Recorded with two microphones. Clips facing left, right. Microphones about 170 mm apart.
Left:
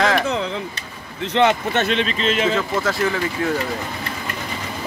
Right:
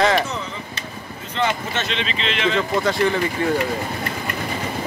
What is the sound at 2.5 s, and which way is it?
Speech, centre (ahead or behind).